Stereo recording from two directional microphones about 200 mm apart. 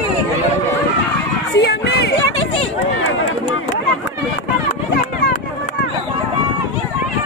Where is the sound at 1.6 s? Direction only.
55° left (ahead or behind).